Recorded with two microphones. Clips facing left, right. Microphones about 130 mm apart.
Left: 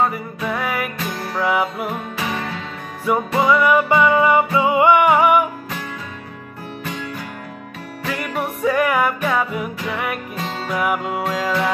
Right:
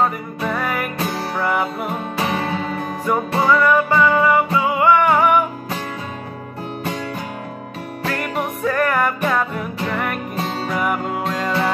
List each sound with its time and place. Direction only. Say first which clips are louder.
0.0 s music: right 1 dB; 5° left (ahead or behind)
2.1 s music: right 4 dB; 35° right (ahead or behind)
3.1 s music: left 1 dB; 5° left (ahead or behind)
8.1 s music: even; 5° left (ahead or behind)